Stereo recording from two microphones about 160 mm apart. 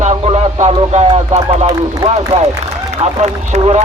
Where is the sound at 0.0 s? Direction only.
45° right (ahead or behind).